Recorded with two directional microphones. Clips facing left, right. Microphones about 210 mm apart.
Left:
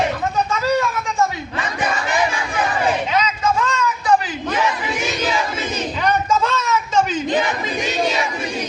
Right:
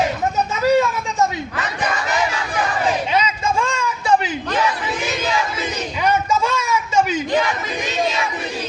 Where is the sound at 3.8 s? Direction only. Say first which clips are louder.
Left 1 dB; 25° right (ahead or behind).